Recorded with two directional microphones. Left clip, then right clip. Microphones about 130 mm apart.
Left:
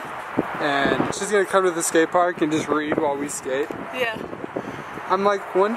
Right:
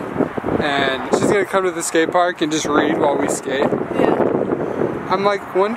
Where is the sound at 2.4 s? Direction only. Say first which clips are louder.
Right 5 dB; 30° right (ahead or behind).